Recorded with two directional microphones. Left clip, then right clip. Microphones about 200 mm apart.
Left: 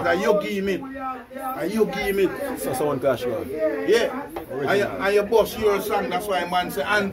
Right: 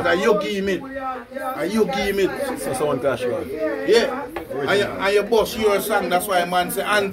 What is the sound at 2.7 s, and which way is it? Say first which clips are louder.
Speech: even; 40° left (ahead or behind).